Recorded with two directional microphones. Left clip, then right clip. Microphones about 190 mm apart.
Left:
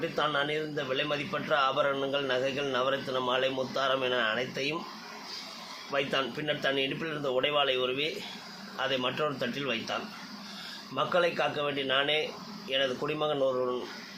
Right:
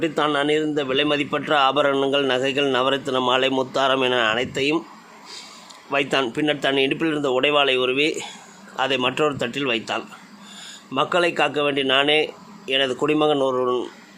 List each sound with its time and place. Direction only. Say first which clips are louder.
0.0 s a man's voice: right 8 dB; 60° right (ahead or behind)
5.9 s a man's voice: right 9 dB; 65° right (ahead or behind)